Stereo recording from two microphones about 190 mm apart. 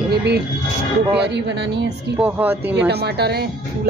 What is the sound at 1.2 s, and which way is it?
Speech, 65° right (ahead or behind).